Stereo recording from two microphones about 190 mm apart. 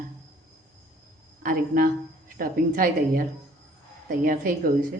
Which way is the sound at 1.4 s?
50° right (ahead or behind).